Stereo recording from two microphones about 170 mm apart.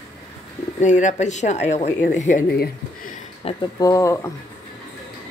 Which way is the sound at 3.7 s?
20° left (ahead or behind).